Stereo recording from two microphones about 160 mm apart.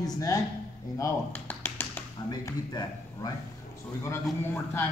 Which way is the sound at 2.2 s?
25° left (ahead or behind).